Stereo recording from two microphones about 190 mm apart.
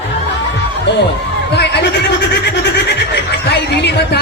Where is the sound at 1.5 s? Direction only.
60° left (ahead or behind).